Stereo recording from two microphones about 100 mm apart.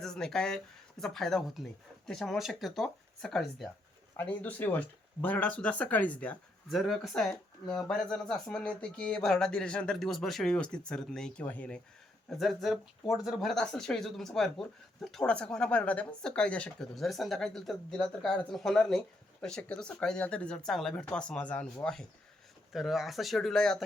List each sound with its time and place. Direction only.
0.0 s speech: 5° left (ahead or behind)
4.2 s speech: 15° left (ahead or behind)
6.7 s speech: centre (ahead or behind); by 11.8 s 15° left (ahead or behind)
12.4 s speech: centre (ahead or behind)
16.9 s speech: centre (ahead or behind)
22.7 s speech: 5° right (ahead or behind)